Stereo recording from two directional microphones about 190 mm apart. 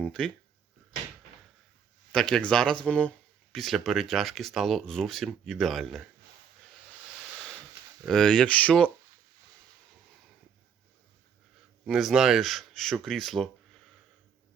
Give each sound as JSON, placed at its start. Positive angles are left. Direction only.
{"t": 0.0, "sound": "speech", "side_deg": 5}
{"t": 2.1, "sound": "speech", "side_deg": 5}
{"t": 8.0, "sound": "speech", "side_deg": 5}
{"t": 11.9, "sound": "speech", "side_deg": 0}